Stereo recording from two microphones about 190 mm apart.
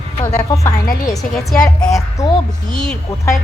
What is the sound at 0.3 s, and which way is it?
Speech, 15° left (ahead or behind).